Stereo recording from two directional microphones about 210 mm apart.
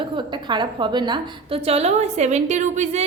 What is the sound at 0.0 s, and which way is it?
A woman's voice, 20° right (ahead or behind).